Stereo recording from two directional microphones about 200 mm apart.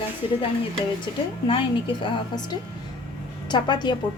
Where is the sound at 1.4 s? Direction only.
25° left (ahead or behind).